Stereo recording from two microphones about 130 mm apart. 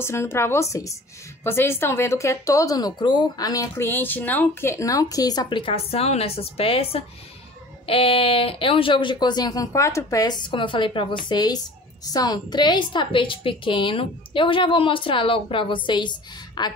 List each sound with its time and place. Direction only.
0.0 s a woman's voice: 20° left (ahead or behind); by 16.7 s 35° left (ahead or behind)